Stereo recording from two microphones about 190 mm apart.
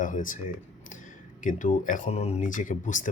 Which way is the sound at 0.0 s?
45° left (ahead or behind).